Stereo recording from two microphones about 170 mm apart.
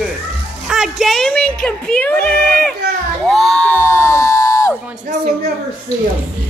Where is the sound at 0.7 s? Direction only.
Centre (ahead or behind).